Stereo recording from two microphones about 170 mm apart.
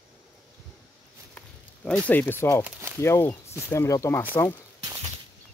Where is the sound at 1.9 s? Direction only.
5° left (ahead or behind).